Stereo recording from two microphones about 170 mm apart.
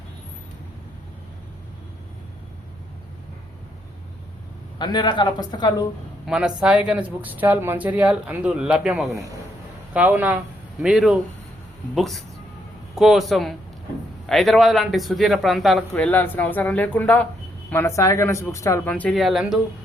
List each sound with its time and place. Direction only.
4.8 s speech: 25° left (ahead or behind)
6.2 s speech: 5° right (ahead or behind)